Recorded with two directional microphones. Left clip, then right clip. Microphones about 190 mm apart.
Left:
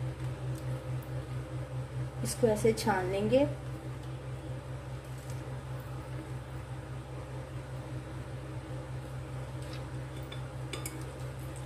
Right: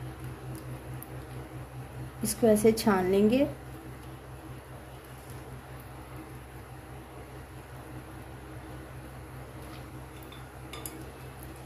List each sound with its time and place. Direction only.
2.2 s a woman's voice: 65° right (ahead or behind)